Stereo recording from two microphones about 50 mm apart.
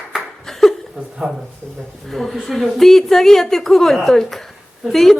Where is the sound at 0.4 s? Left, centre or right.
Centre.